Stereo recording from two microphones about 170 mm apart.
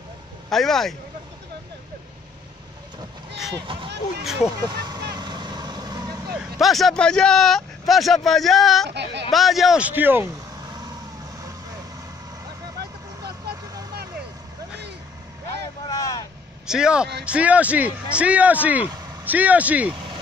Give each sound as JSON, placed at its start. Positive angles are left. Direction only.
{"t": 0.5, "sound": "a man's voice", "side_deg": 0}
{"t": 3.6, "sound": "speech", "side_deg": -30}
{"t": 5.1, "sound": "vehicle", "side_deg": -25}
{"t": 6.6, "sound": "a man's voice", "side_deg": 0}
{"t": 8.8, "sound": "speech", "side_deg": -80}
{"t": 9.3, "sound": "a man's voice", "side_deg": 0}
{"t": 15.9, "sound": "vehicle", "side_deg": 20}
{"t": 16.6, "sound": "a man's voice", "side_deg": -5}